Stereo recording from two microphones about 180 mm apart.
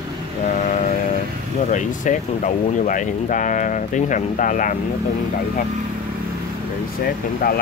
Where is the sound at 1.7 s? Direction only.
45° left (ahead or behind).